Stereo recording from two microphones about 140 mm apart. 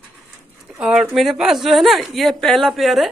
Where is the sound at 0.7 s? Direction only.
5° right (ahead or behind).